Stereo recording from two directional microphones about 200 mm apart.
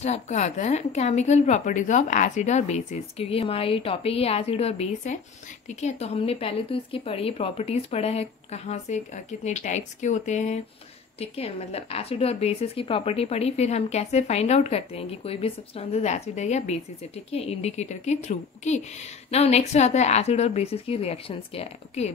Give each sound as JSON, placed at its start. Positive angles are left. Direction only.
{"t": 0.0, "sound": "a woman's voice", "side_deg": 35}